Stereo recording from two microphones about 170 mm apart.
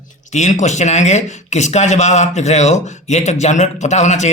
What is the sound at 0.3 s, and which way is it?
A man's voice, 45° left (ahead or behind).